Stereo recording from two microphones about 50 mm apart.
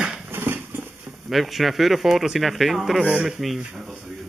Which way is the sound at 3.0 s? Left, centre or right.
Centre.